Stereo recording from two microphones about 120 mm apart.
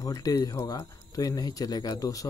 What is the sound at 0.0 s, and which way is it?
A man's voice, 30° left (ahead or behind).